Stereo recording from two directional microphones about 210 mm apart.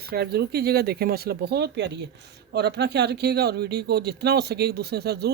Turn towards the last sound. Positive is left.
turn(degrees=-50)  # may be behind; listen again after turning